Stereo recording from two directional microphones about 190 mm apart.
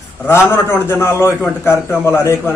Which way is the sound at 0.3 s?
15° left (ahead or behind).